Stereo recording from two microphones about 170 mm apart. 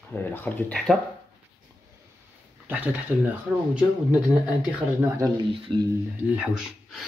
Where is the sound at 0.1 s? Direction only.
10° left (ahead or behind).